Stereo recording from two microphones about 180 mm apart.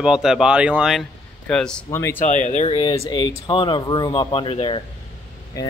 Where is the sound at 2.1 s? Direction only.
45° left (ahead or behind).